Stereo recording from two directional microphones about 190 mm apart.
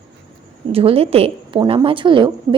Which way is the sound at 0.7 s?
30° right (ahead or behind).